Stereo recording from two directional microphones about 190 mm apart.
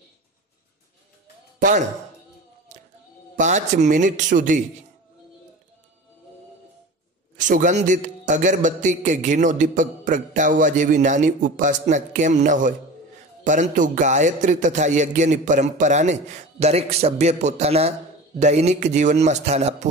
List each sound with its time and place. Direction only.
1.6 s a man's voice: 40° right (ahead or behind)
3.3 s a man's voice: 40° right (ahead or behind)
7.3 s a man's voice: 40° right (ahead or behind)